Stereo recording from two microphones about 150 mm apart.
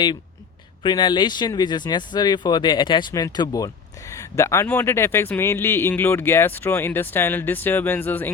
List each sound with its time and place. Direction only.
0.8 s a man's voice: 30° left (ahead or behind); by 8.3 s 10° left (ahead or behind)